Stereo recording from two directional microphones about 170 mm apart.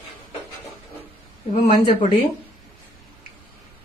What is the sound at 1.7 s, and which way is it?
Speech, 45° left (ahead or behind).